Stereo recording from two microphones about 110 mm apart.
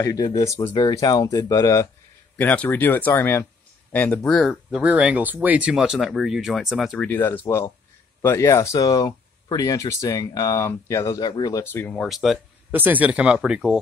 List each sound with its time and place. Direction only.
0.0 s speech: 30° left (ahead or behind)
2.3 s speech: 15° left (ahead or behind)
4.3 s speech: centre (ahead or behind)
7.0 s speech: 20° left (ahead or behind); by 11.6 s 35° left (ahead or behind)
11.6 s speech: 20° left (ahead or behind)
12.0 s speech: centre (ahead or behind)
12.7 s speech: 15° right (ahead or behind)